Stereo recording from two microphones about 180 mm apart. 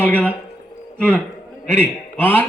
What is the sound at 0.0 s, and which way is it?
A man's voice, 10° left (ahead or behind).